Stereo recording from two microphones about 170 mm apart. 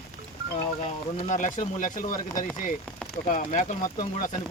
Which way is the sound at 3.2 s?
50° left (ahead or behind).